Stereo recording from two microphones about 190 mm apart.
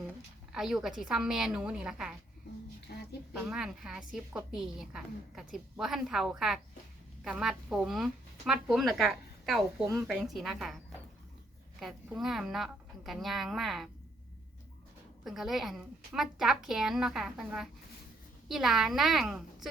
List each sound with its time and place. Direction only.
0.5 s a woman's voice: centre (ahead or behind)
2.9 s a sound: 55° left (ahead or behind)
3.5 s a woman's voice: 5° right (ahead or behind)
11.8 s a woman's voice: centre (ahead or behind)
15.2 s a woman's voice: centre (ahead or behind)